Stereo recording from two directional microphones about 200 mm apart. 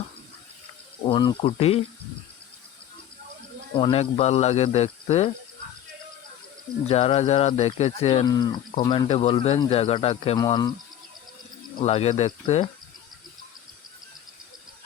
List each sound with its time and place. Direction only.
1.0 s speech: 25° left (ahead or behind)
3.8 s speech: 30° left (ahead or behind)
6.8 s speech: 30° left (ahead or behind)
8.3 s speech: 20° left (ahead or behind)
10.3 s speech: 20° left (ahead or behind)
11.8 s speech: 30° left (ahead or behind)